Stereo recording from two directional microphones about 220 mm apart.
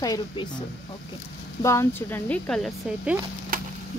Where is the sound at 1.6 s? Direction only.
10° left (ahead or behind).